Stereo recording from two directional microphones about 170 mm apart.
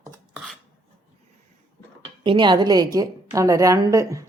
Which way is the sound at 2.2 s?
30° right (ahead or behind).